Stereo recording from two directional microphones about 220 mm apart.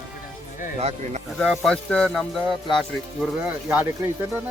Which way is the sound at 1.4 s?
Centre (ahead or behind).